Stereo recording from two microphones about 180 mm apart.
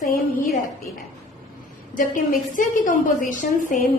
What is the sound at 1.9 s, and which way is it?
A woman's voice, 50° left (ahead or behind).